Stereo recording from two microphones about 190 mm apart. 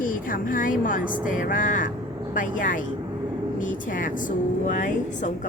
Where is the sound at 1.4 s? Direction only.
45° left (ahead or behind).